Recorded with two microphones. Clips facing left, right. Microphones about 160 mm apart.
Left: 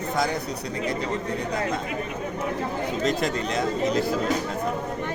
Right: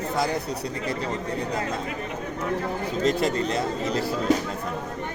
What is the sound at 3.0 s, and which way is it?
Speech, 30° right (ahead or behind).